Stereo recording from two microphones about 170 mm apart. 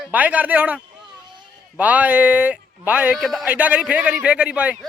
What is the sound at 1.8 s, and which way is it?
Speech, 10° right (ahead or behind).